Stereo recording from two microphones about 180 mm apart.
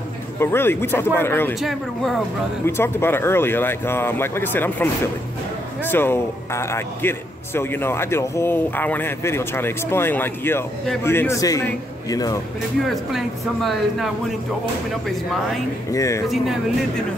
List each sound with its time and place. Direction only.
0.4 s a man's voice: 15° left (ahead or behind)
1.5 s speech: centre (ahead or behind)
2.6 s a man's voice: 15° left (ahead or behind)
13.1 s speech: centre (ahead or behind)
15.9 s a man's voice: 15° left (ahead or behind)